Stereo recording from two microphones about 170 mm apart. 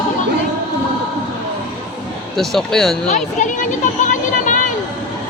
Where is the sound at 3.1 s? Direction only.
45° left (ahead or behind).